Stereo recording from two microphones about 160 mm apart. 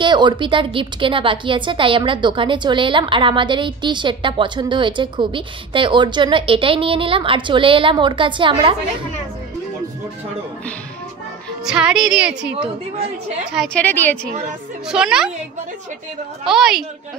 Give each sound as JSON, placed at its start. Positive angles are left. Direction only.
{"t": 0.0, "sound": "a woman's voice", "side_deg": -30}
{"t": 11.6, "sound": "a woman's voice", "side_deg": -5}
{"t": 13.7, "sound": "a woman's voice", "side_deg": 10}
{"t": 14.9, "sound": "a woman's voice", "side_deg": -5}
{"t": 16.4, "sound": "a woman's voice", "side_deg": -5}